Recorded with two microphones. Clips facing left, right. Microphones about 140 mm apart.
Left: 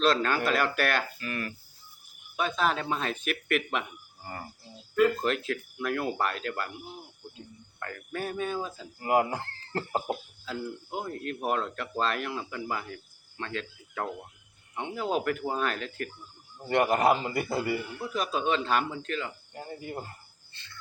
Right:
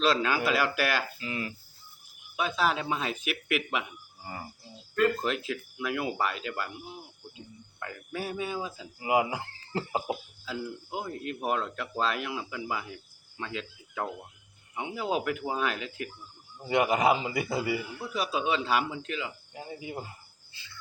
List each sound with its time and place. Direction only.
0.0 s speech: 5° right (ahead or behind)
1.2 s a man's voice: 20° right (ahead or behind)
2.3 s speech: 5° right (ahead or behind)
4.9 s a man's voice: 5° left (ahead or behind)